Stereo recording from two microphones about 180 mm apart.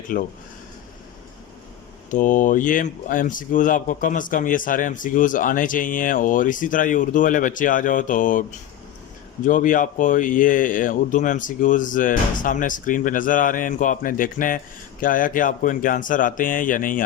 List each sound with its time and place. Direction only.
0.1 s speech: 50° left (ahead or behind)
2.0 s speech: 45° left (ahead or behind)